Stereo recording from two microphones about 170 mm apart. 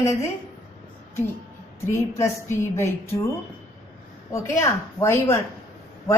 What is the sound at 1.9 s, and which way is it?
A woman's voice, 15° left (ahead or behind).